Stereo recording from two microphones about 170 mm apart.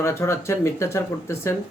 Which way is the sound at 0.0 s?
15° left (ahead or behind).